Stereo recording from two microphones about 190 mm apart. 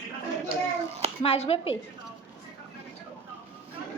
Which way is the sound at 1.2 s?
30° left (ahead or behind).